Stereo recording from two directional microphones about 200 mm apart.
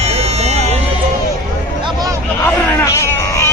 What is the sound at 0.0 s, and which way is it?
Music, 30° right (ahead or behind).